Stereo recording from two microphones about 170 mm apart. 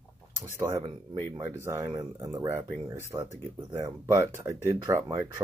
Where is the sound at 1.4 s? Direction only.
15° right (ahead or behind).